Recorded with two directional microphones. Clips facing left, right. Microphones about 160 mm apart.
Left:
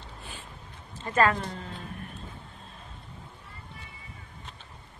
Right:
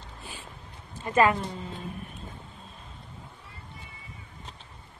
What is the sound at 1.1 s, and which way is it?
Speech, 15° right (ahead or behind).